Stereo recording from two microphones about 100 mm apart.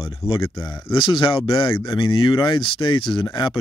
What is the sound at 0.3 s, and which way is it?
Speech, 60° left (ahead or behind).